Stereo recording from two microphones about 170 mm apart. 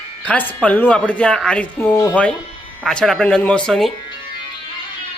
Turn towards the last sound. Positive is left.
turn(degrees=5)  # may be behind; listen again after turning